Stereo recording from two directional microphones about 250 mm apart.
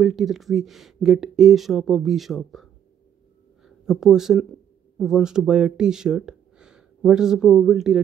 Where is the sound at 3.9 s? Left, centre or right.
Centre.